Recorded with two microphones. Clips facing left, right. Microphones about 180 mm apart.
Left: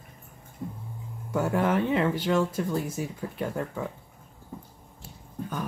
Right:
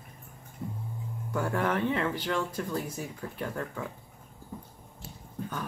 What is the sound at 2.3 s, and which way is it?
Speech, 25° left (ahead or behind).